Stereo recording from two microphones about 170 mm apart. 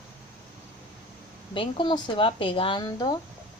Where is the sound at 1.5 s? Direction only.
30° left (ahead or behind).